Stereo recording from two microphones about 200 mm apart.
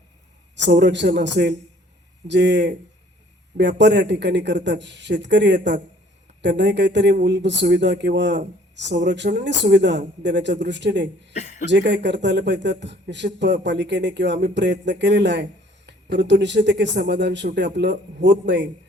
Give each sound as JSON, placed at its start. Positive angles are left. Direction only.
{"t": 0.5, "sound": "a man's voice", "side_deg": -60}
{"t": 11.3, "sound": "speech", "side_deg": 35}
{"t": 11.7, "sound": "a man's voice", "side_deg": -60}